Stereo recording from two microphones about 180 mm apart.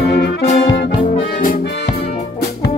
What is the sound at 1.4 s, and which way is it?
Music, 50° left (ahead or behind).